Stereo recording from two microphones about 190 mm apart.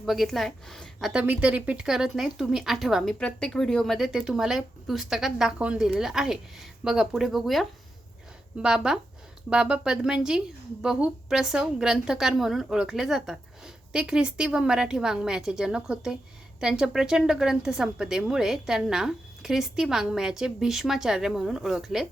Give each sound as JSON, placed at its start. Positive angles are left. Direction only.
{"t": 0.0, "sound": "a woman's voice", "side_deg": 0}